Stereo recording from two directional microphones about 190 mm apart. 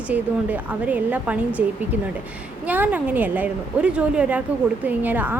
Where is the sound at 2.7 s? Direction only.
10° right (ahead or behind).